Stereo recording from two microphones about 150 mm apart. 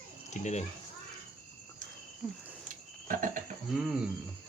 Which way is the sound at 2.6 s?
65° right (ahead or behind).